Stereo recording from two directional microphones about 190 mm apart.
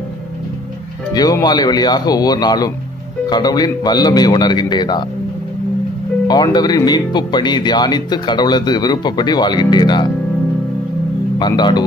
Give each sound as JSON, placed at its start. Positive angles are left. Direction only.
{"t": 1.1, "sound": "speech", "side_deg": 20}
{"t": 6.2, "sound": "speech", "side_deg": 20}
{"t": 11.3, "sound": "speech", "side_deg": 25}